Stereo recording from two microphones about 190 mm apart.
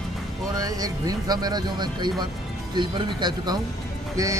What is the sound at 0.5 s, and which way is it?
Speech, 20° right (ahead or behind).